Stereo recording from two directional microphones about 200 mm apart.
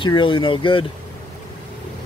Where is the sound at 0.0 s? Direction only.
25° left (ahead or behind).